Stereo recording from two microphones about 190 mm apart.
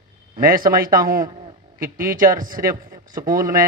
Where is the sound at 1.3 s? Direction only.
25° right (ahead or behind).